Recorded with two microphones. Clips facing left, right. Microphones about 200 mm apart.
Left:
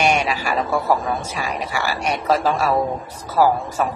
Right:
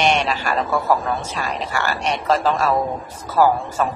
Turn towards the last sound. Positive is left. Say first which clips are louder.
# even
turn(degrees=10)  # may be behind; listen again after turning